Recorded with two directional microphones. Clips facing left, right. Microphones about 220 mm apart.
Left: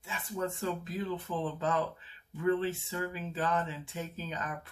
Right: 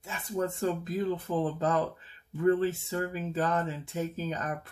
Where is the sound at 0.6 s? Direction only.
45° right (ahead or behind).